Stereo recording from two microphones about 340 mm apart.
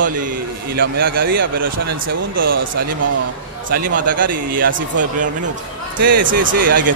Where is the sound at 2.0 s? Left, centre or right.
Right.